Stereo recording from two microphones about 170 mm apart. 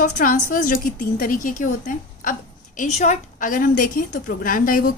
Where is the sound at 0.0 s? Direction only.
50° left (ahead or behind).